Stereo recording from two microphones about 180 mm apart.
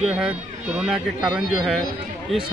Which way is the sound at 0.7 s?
5° right (ahead or behind).